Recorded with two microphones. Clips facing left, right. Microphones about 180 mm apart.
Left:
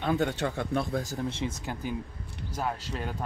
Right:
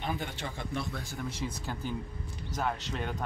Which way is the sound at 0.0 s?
70° left (ahead or behind).